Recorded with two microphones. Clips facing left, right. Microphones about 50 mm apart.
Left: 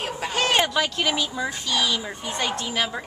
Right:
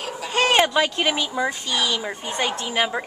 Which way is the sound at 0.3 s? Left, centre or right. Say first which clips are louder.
Right 4 dB; right.